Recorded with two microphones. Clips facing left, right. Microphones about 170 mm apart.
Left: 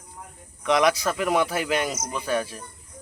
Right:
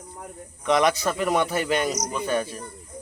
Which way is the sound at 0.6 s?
Centre (ahead or behind).